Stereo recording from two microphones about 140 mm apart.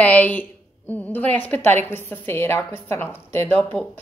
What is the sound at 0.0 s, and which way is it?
Speech, 10° left (ahead or behind).